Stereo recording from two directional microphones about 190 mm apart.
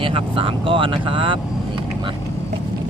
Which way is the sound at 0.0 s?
30° right (ahead or behind).